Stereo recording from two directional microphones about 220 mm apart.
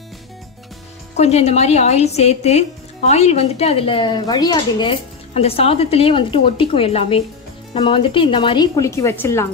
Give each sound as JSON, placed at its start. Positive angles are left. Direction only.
{"t": 1.1, "sound": "speech", "side_deg": 30}